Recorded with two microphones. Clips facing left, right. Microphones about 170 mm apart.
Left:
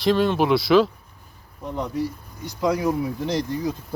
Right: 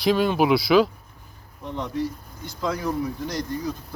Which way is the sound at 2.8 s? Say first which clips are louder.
Left 3 dB; 25° left (ahead or behind).